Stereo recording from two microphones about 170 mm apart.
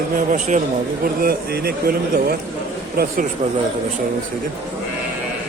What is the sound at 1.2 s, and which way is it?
Speech, 65° right (ahead or behind).